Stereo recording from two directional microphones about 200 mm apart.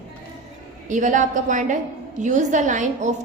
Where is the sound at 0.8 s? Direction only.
40° right (ahead or behind).